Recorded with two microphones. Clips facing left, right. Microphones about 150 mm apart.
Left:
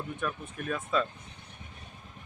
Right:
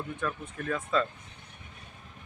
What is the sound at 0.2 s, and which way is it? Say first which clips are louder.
Speech: right 1 dB; 10° left (ahead or behind).